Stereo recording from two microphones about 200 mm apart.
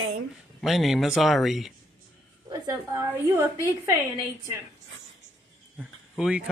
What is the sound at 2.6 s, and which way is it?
Speech, 10° right (ahead or behind).